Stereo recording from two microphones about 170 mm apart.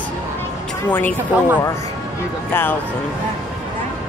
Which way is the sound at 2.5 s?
10° left (ahead or behind).